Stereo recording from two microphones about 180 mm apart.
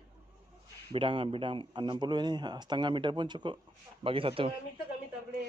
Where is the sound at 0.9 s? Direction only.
30° right (ahead or behind).